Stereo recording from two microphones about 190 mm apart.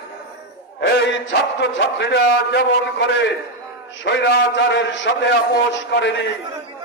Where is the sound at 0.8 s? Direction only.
65° left (ahead or behind).